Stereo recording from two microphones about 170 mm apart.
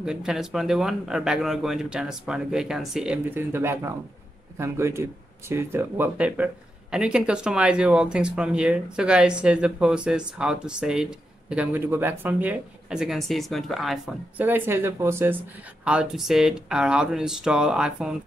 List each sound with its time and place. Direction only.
0.0 s speech: 5° right (ahead or behind)